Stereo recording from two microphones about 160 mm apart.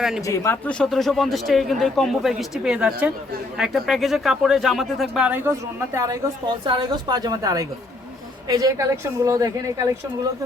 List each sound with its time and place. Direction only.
0.3 s a woman's voice: 15° left (ahead or behind); by 9.9 s 20° right (ahead or behind)